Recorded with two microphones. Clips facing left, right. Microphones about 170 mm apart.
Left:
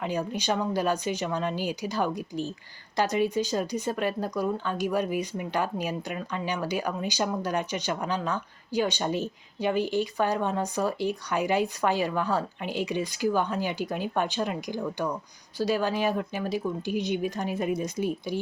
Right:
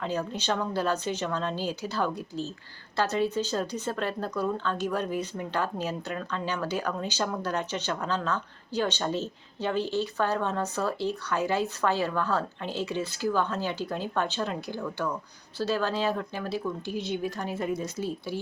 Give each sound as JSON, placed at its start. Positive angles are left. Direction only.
{"t": 0.0, "sound": "speech", "side_deg": 15}